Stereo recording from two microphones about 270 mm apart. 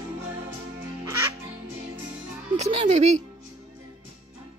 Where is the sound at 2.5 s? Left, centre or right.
Right.